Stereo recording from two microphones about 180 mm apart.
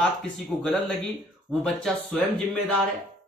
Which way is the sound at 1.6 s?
5° left (ahead or behind).